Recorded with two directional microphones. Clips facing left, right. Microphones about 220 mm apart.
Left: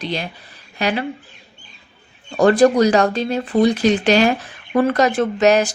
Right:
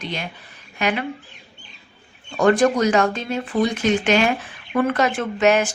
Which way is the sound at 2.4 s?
35° left (ahead or behind).